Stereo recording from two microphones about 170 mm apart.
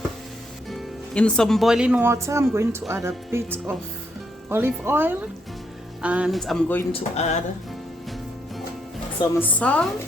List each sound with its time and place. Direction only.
0.7 s speech: 5° left (ahead or behind)
6.9 s speech: 40° left (ahead or behind)
9.4 s speech: 10° left (ahead or behind)